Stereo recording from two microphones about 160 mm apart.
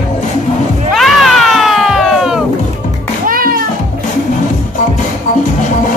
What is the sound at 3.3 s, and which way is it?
Music, 60° right (ahead or behind).